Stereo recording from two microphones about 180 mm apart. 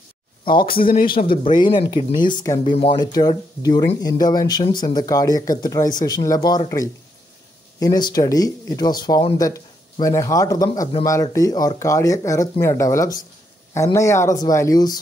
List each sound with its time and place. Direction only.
0.6 s speech: 55° left (ahead or behind)
1.0 s speech: 30° left (ahead or behind)